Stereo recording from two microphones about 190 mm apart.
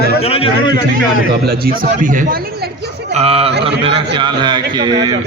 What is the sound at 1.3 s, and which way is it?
Speech, 55° right (ahead or behind).